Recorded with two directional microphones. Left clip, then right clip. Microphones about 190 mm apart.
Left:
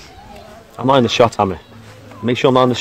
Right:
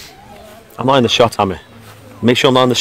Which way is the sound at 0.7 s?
35° right (ahead or behind).